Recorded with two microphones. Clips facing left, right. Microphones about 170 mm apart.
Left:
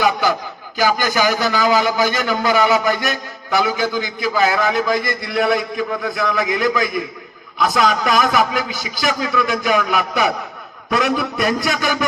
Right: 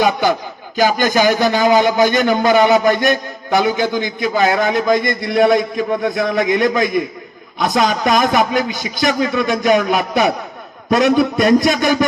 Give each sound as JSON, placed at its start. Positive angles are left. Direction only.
{"t": 0.0, "sound": "a man's voice", "side_deg": -25}